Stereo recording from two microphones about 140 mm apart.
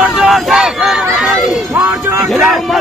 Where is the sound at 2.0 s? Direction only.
20° right (ahead or behind).